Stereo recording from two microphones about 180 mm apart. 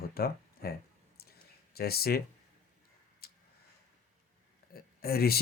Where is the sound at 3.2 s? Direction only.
60° left (ahead or behind).